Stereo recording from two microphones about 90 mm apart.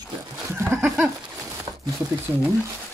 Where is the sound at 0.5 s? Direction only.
30° right (ahead or behind).